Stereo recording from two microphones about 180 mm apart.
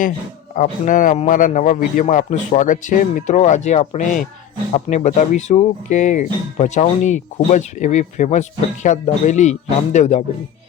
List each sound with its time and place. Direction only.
0.5 s a man's voice: 45° left (ahead or behind)